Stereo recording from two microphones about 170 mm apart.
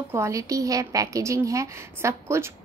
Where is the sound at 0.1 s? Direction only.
15° right (ahead or behind).